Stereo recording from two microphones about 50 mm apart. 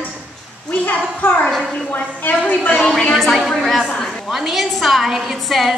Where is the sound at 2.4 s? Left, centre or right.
Left.